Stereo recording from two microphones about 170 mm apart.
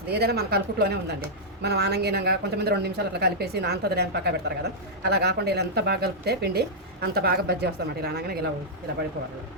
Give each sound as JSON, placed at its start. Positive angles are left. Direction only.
{"t": 0.1, "sound": "a woman's voice", "side_deg": -70}